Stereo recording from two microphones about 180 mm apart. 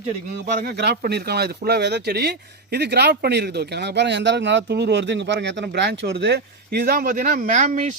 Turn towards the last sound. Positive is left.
turn(degrees=-45)  # may be behind; listen again after turning